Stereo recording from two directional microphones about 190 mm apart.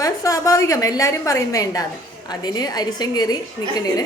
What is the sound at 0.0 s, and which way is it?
A woman's voice, 15° left (ahead or behind).